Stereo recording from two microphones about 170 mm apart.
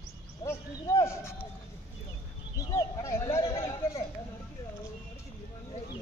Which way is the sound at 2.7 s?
15° left (ahead or behind).